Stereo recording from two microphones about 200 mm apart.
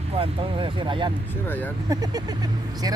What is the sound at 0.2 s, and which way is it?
Speech, 25° right (ahead or behind).